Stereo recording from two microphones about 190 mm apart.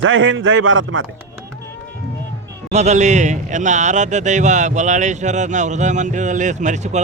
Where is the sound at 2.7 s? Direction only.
35° right (ahead or behind).